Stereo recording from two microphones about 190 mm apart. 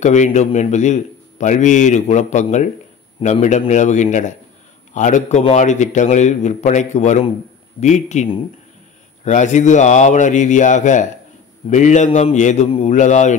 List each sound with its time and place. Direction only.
0.0 s a man's voice: 40° left (ahead or behind)